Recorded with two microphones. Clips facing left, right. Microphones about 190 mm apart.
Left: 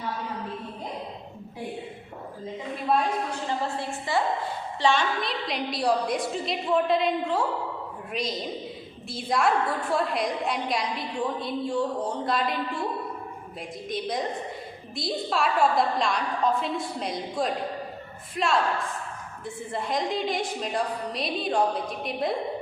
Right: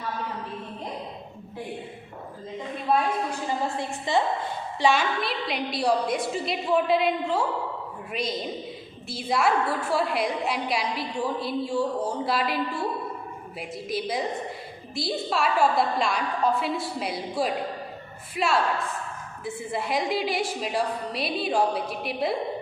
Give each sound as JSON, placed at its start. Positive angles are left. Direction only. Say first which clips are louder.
{"t": 3.4, "sound": "a woman's voice", "louder": "right 1 dB", "side_deg": -20}
{"t": 13.6, "sound": "a woman's voice", "louder": "right 2 dB", "side_deg": -5}
{"t": 19.7, "sound": "a woman's voice", "louder": "right 1 dB", "side_deg": -10}